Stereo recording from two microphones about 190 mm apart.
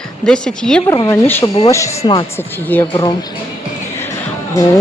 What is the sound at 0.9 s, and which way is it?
Speech, 15° left (ahead or behind).